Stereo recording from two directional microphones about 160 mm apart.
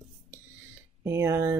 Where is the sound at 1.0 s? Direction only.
15° right (ahead or behind).